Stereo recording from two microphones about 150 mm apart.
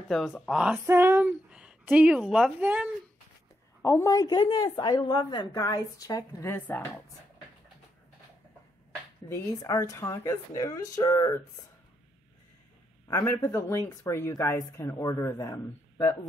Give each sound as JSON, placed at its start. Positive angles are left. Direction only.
{"t": 0.1, "sound": "speech", "side_deg": 0}
{"t": 0.8, "sound": "speech", "side_deg": -15}
{"t": 3.8, "sound": "a woman's voice", "side_deg": 20}
{"t": 9.3, "sound": "a woman's voice", "side_deg": 20}
{"t": 13.1, "sound": "a woman's voice", "side_deg": 20}